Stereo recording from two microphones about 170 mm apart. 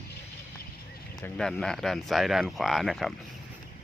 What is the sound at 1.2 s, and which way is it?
Speech, 5° left (ahead or behind).